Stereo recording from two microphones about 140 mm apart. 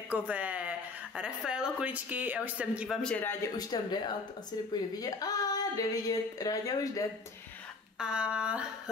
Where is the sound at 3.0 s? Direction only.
10° left (ahead or behind).